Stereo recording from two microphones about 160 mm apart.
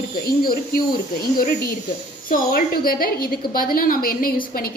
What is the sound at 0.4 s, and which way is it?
Speech, 65° left (ahead or behind).